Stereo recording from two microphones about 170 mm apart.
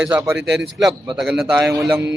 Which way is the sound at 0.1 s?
15° right (ahead or behind).